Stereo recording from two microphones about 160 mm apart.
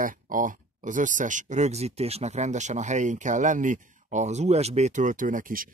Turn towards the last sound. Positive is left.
turn(degrees=-60)  # may be behind; listen again after turning